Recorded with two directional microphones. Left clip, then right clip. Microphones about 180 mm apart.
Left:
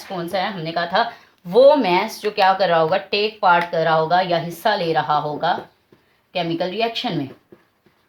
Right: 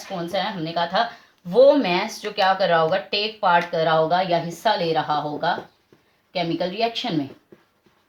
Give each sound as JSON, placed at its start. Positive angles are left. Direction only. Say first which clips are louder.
{"t": 0.3, "sound": "speech", "louder": "left 2 dB", "side_deg": 45}